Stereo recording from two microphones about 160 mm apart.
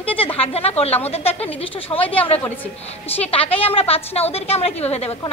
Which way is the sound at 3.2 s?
35° left (ahead or behind).